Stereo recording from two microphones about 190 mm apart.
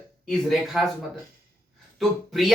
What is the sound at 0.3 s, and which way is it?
Speech, centre (ahead or behind).